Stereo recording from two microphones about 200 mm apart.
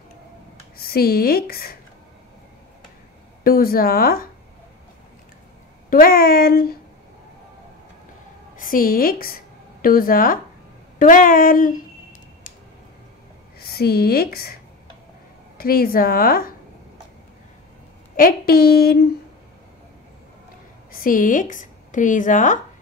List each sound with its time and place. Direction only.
0.7 s speech: 50° left (ahead or behind)
3.4 s speech: 50° left (ahead or behind)
5.9 s speech: 45° left (ahead or behind)
8.5 s a woman's voice: 45° left (ahead or behind)
11.0 s a sound: 40° left (ahead or behind)
13.6 s speech: 50° left (ahead or behind)
15.5 s speech: 50° left (ahead or behind)
18.1 s speech: 45° left (ahead or behind)
20.9 s a woman's voice: 45° left (ahead or behind)